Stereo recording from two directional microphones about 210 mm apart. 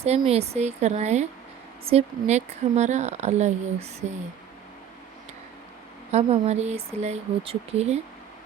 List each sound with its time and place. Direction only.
0.0 s speech: 30° right (ahead or behind)
6.1 s speech: 30° right (ahead or behind)